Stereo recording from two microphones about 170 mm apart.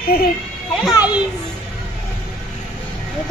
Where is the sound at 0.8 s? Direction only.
5° right (ahead or behind).